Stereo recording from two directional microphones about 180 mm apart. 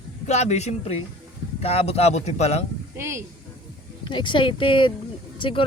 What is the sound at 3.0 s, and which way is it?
Speech, 15° right (ahead or behind).